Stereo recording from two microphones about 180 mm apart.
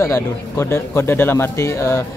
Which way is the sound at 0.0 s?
15° left (ahead or behind).